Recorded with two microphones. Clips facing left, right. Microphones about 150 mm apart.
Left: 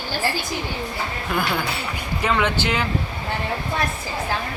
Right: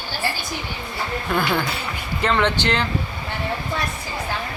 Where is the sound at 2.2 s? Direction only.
10° left (ahead or behind).